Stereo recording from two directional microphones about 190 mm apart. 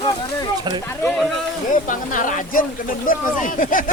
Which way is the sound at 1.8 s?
45° left (ahead or behind).